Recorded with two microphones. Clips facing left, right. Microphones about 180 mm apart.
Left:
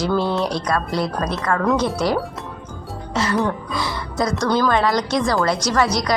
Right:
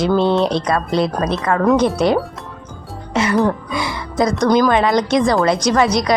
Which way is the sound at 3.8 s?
20° right (ahead or behind).